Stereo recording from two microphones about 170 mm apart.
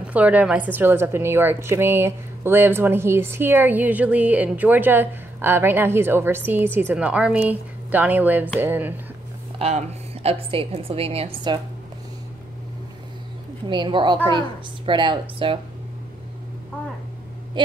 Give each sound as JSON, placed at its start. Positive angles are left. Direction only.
{"t": 0.1, "sound": "a woman's voice", "side_deg": -10}
{"t": 9.6, "sound": "a woman's voice", "side_deg": -40}
{"t": 13.7, "sound": "a woman's voice", "side_deg": -30}
{"t": 17.6, "sound": "a sound", "side_deg": -25}